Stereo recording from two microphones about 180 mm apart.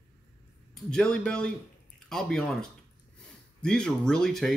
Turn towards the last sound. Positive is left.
turn(degrees=0)  # may be behind; listen again after turning